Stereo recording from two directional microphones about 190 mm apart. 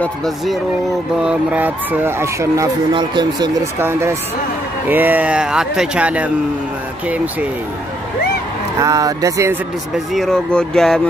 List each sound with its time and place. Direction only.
1.2 s speech: 10° right (ahead or behind); by 3.4 s 25° right (ahead or behind)
4.8 s speech: 10° right (ahead or behind)
8.7 s speech: 15° right (ahead or behind)
9.9 s speech: centre (ahead or behind)